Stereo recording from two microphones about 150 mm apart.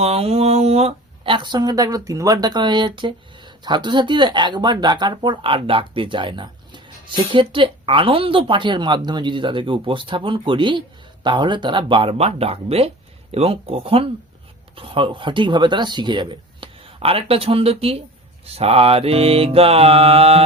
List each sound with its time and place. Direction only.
0.0 s speech: 40° right (ahead or behind)